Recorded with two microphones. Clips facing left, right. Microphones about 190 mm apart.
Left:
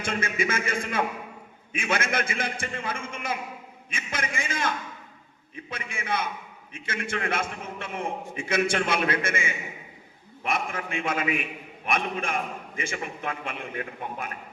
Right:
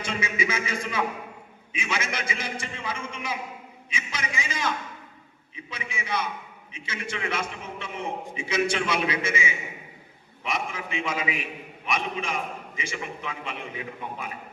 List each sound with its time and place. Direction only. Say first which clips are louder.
0.0 s a man's voice: left 1 dB; 50° left (ahead or behind)